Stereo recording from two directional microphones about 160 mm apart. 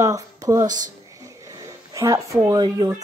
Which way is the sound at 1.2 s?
20° right (ahead or behind).